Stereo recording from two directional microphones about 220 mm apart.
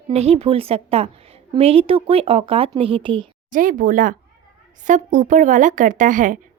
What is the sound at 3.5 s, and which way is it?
Speech, 35° right (ahead or behind).